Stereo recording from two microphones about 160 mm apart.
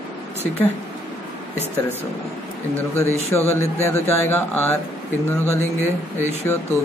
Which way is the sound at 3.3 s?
15° left (ahead or behind).